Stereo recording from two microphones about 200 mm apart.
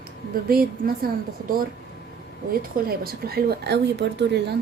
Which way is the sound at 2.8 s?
50° right (ahead or behind).